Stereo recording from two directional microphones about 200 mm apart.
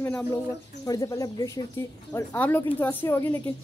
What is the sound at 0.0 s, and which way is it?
A woman's voice, 10° left (ahead or behind).